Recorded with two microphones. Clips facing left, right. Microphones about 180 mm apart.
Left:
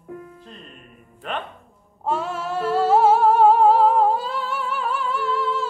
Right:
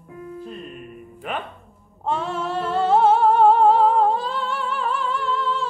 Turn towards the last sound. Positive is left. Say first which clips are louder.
# left 1 dB
turn(degrees=5)  # may be behind; listen again after turning